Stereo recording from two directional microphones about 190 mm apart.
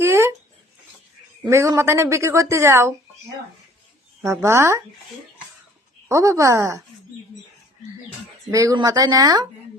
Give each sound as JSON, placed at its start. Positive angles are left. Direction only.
{"t": 0.0, "sound": "a sound", "side_deg": -15}
{"t": 1.5, "sound": "a woman's voice", "side_deg": -15}
{"t": 4.2, "sound": "a woman's voice", "side_deg": -15}
{"t": 6.1, "sound": "a woman's voice", "side_deg": -15}
{"t": 8.4, "sound": "speech", "side_deg": -20}